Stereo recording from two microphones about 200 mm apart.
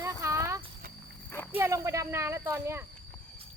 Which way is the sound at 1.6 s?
15° right (ahead or behind).